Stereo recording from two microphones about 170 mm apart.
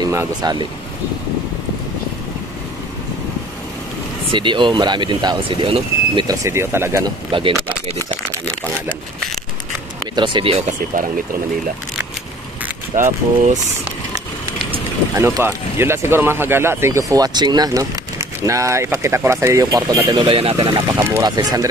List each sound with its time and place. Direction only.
0.1 s speech: 20° right (ahead or behind)
4.3 s speech: 30° right (ahead or behind)
7.2 s speech: 30° right (ahead or behind)
10.1 s speech: 30° right (ahead or behind)
12.9 s speech: 45° right (ahead or behind)
15.1 s speech: 15° right (ahead or behind)